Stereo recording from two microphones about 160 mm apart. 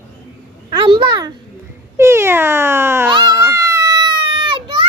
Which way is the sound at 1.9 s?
15° right (ahead or behind).